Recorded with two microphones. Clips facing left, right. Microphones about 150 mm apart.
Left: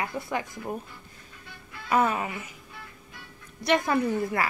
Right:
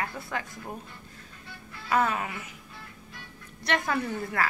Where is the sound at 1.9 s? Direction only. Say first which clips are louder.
Left 2 dB; 10° left (ahead or behind).